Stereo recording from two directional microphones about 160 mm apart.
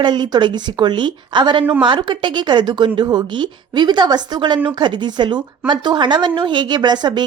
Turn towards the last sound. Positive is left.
turn(degrees=-25)  # may be behind; listen again after turning